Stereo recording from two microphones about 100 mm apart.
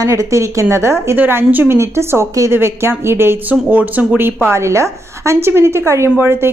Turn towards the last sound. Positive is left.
turn(degrees=-20)  # may be behind; listen again after turning